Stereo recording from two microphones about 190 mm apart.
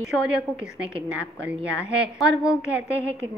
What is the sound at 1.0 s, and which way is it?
A woman's voice, 5° right (ahead or behind).